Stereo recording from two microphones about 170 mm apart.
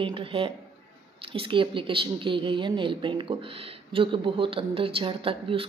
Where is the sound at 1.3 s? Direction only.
30° right (ahead or behind).